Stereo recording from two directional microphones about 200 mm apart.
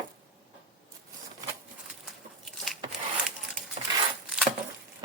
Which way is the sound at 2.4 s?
Centre (ahead or behind).